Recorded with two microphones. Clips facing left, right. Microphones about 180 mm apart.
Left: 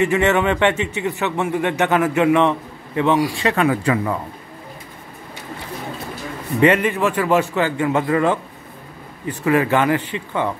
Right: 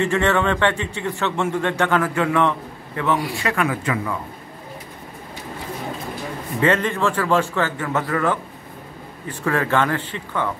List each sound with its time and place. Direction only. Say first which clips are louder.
0.0 s a man's voice: left 2 dB; 15° left (ahead or behind); by 4.1 s 35° left (ahead or behind)
6.6 s a man's voice: left 3 dB; 10° left (ahead or behind)
9.4 s a man's voice: left 3 dB; 10° left (ahead or behind)